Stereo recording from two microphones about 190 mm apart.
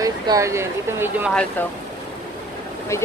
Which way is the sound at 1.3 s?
5° left (ahead or behind).